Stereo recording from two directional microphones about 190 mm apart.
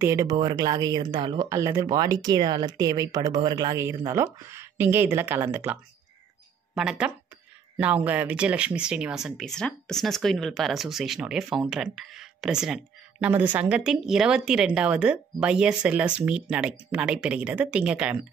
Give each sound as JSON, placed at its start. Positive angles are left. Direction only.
{"t": 0.0, "sound": "speech", "side_deg": -15}